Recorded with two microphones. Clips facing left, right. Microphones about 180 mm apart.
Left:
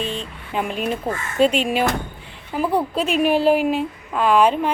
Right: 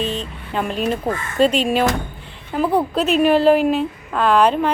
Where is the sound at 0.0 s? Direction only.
40° right (ahead or behind).